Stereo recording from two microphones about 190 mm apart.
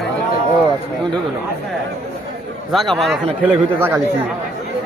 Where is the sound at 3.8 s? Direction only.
10° right (ahead or behind).